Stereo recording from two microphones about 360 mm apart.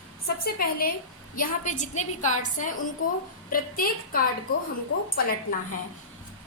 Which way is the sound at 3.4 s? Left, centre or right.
Left.